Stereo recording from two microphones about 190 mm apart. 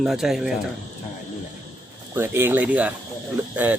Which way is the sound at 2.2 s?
10° right (ahead or behind).